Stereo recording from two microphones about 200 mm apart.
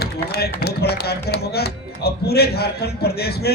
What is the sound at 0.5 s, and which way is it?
Speech, 50° left (ahead or behind).